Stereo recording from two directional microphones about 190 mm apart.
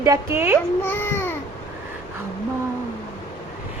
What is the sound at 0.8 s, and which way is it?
Babbling, 10° left (ahead or behind).